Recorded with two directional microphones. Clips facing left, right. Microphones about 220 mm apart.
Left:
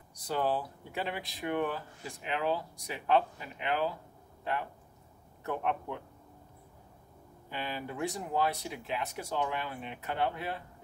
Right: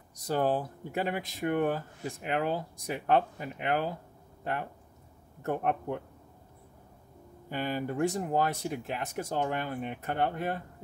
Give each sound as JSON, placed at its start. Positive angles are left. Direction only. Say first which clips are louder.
{"t": 0.2, "sound": "speech", "louder": "right 3 dB", "side_deg": -45}
{"t": 5.4, "sound": "speech", "louder": "right 3 dB", "side_deg": -45}
{"t": 7.4, "sound": "speech", "louder": "right 6 dB", "side_deg": -45}